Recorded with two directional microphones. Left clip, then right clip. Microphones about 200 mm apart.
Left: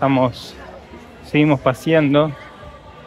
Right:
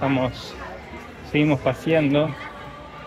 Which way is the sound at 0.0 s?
40° left (ahead or behind).